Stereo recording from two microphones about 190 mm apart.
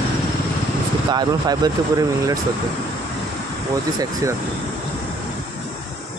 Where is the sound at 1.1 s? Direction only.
20° right (ahead or behind).